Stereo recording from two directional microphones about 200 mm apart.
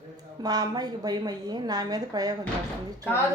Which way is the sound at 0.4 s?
20° right (ahead or behind).